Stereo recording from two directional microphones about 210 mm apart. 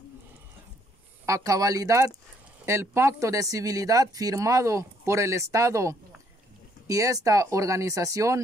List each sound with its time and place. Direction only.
1.2 s speech: 15° right (ahead or behind)